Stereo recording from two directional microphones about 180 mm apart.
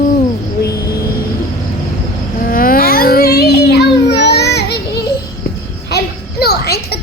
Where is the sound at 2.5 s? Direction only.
55° left (ahead or behind).